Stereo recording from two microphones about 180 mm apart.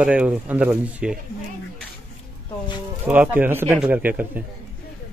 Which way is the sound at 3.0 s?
10° right (ahead or behind).